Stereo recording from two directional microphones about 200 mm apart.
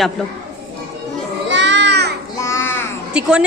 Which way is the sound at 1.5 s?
60° right (ahead or behind).